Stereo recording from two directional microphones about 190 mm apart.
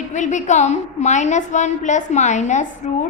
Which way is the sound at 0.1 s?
40° left (ahead or behind).